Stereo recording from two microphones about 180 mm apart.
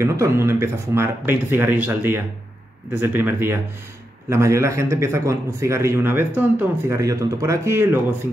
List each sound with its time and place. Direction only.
0.0 s a man's voice: 15° right (ahead or behind)